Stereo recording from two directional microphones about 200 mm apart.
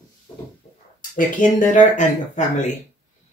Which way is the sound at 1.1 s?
40° left (ahead or behind).